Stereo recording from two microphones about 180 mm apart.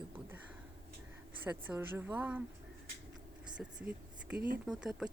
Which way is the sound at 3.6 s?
5° right (ahead or behind).